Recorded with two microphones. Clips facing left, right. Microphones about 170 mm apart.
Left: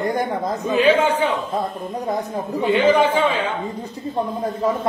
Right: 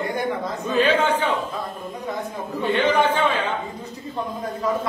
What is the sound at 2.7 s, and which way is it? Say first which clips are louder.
Speech: left 4 dB; 10° left (ahead or behind).